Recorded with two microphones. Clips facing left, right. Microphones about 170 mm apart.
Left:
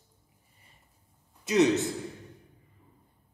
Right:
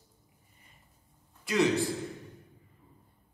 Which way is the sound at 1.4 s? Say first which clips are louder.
Left 4 dB; 20° left (ahead or behind).